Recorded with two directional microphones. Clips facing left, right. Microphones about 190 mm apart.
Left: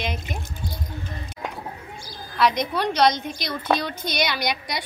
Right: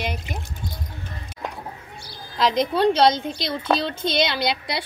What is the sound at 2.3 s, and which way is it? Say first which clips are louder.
A woman's voice: right 1 dB; 25° right (ahead or behind).